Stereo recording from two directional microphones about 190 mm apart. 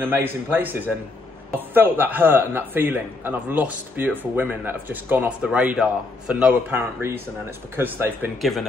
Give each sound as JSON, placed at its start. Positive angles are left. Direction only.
{"t": 0.0, "sound": "a man's voice", "side_deg": -10}
{"t": 8.4, "sound": "speech", "side_deg": 0}